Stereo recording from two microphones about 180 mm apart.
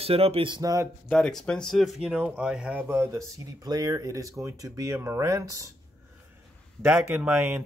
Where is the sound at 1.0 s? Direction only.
5° left (ahead or behind); by 5.7 s 20° right (ahead or behind).